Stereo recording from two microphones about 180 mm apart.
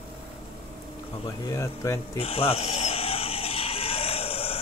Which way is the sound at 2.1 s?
30° left (ahead or behind).